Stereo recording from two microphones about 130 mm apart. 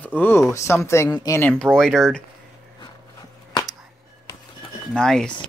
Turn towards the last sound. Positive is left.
turn(degrees=5)  # may be behind; listen again after turning